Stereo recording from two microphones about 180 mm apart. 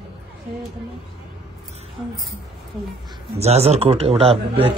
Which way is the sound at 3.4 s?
35° right (ahead or behind).